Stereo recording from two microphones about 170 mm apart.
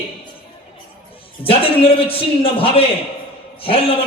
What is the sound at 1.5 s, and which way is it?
A man's voice, 35° left (ahead or behind).